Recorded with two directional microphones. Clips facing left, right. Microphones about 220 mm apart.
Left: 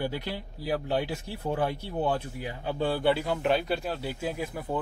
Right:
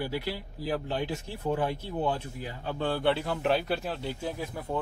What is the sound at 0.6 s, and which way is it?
Speech, 10° left (ahead or behind).